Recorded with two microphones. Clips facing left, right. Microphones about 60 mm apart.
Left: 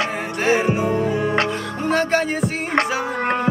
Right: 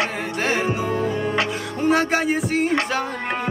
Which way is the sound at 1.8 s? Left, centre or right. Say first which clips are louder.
Even; centre.